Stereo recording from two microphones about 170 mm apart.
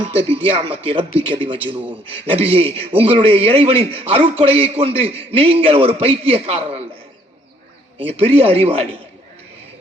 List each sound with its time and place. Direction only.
0.3 s a man's voice: 35° right (ahead or behind)
7.9 s a man's voice: 35° right (ahead or behind)